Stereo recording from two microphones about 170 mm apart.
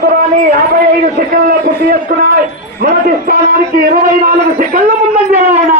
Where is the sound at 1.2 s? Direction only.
60° right (ahead or behind).